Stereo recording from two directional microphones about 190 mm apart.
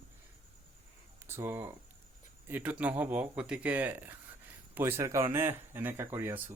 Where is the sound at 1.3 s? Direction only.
15° right (ahead or behind).